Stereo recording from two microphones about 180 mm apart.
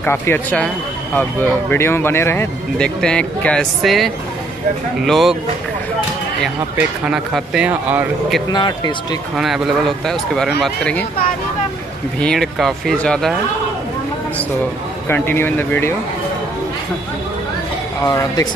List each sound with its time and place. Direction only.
0.0 s speech: 10° left (ahead or behind)
7.1 s speech: 5° right (ahead or behind)
8.5 s speech: 25° left (ahead or behind)
9.4 s speech: centre (ahead or behind)
12.2 s speech: 5° left (ahead or behind)
15.0 s speech: 10° left (ahead or behind)
18.0 s speech: 20° left (ahead or behind)